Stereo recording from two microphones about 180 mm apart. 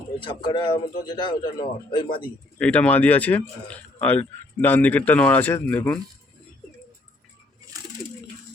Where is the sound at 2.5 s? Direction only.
5° left (ahead or behind).